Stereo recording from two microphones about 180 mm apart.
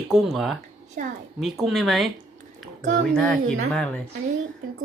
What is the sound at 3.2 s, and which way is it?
Speech, 5° left (ahead or behind).